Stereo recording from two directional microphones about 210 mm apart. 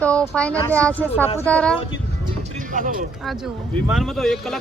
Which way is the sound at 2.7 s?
40° right (ahead or behind).